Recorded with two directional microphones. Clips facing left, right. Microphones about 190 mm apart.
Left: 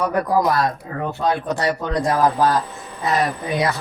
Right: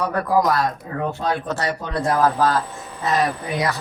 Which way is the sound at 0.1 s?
15° left (ahead or behind).